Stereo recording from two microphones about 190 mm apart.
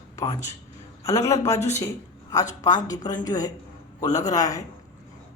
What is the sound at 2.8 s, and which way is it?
A woman's voice, 20° left (ahead or behind).